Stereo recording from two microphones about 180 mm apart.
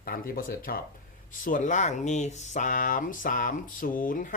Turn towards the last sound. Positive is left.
turn(degrees=50)  # may be behind; listen again after turning